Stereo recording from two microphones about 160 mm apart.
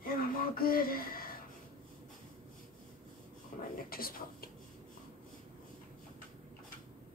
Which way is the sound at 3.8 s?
65° left (ahead or behind).